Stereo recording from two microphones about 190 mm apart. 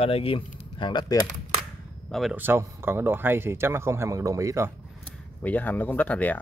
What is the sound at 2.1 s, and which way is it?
Speech, 5° right (ahead or behind).